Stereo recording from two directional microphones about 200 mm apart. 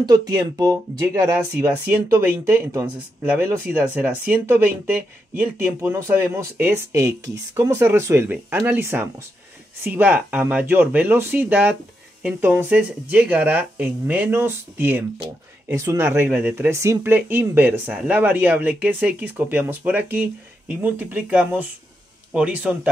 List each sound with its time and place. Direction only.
0.3 s speech: 20° right (ahead or behind)